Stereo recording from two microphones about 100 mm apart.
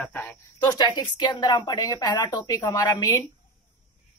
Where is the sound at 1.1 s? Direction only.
50° left (ahead or behind).